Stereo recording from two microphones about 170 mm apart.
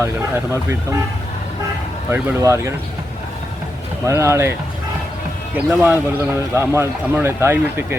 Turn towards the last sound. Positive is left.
turn(degrees=-15)  # may be behind; listen again after turning